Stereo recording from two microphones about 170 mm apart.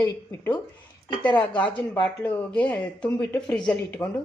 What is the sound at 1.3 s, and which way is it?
Speech, 25° left (ahead or behind).